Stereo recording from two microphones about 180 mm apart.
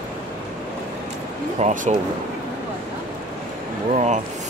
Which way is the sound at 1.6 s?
40° right (ahead or behind).